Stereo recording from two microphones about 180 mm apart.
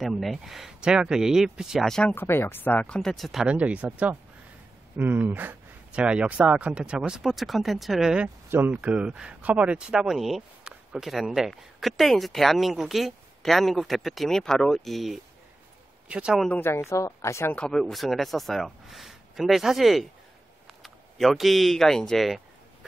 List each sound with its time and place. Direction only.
0.0 s speech: centre (ahead or behind)
16.4 s speech: 10° left (ahead or behind)